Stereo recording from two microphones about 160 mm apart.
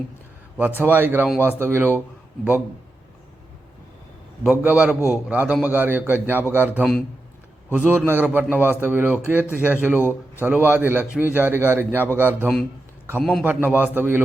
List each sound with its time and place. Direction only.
0.8 s a man's voice: 10° right (ahead or behind)
4.4 s a man's voice: 5° right (ahead or behind)
10.0 s a man's voice: 15° left (ahead or behind)
10.4 s a man's voice: 15° right (ahead or behind)